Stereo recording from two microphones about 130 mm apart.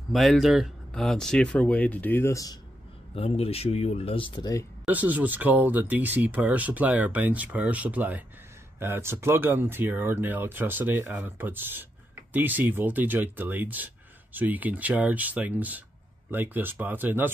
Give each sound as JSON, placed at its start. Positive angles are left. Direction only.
{"t": 0.1, "sound": "speech", "side_deg": 0}
{"t": 3.2, "sound": "speech", "side_deg": 50}
{"t": 4.8, "sound": "speech", "side_deg": -10}